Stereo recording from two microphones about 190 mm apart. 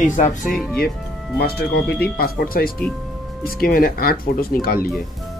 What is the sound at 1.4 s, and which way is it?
Speech, 55° left (ahead or behind).